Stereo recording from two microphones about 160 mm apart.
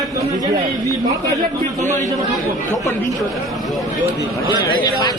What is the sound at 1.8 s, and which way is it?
Speech, 50° right (ahead or behind).